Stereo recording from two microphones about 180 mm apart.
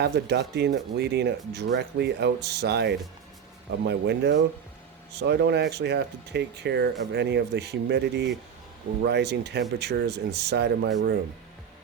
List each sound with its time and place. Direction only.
0.0 s speech: 65° right (ahead or behind)